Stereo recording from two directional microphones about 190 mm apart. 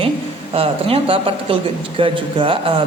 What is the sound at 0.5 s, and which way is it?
A man's voice, 30° right (ahead or behind).